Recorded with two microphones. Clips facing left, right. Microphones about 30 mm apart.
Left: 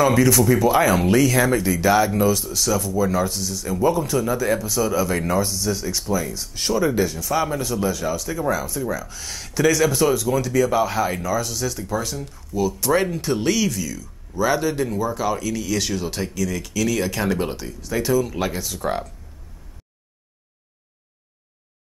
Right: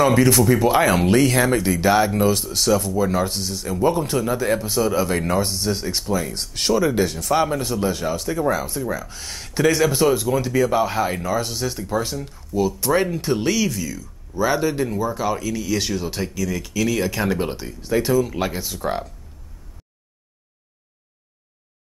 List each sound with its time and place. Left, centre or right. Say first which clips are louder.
0.0 s speech: right 1 dB; right
0.8 s speech: right 1 dB; right
6.0 s speech: even; centre
6.3 s speech: right 2 dB; right
6.7 s speech: right 1 dB; right
7.4 s speech: right 1 dB; centre
10.7 s speech: even; centre
11.2 s speech: even; right; by 18.5 s centre
18.5 s speech: even; centre